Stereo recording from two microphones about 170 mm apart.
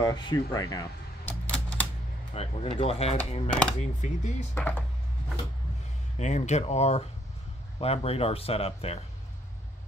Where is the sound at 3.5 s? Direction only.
5° left (ahead or behind).